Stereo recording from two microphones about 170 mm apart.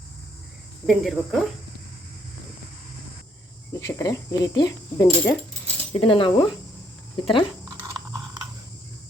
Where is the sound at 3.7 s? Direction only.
20° left (ahead or behind).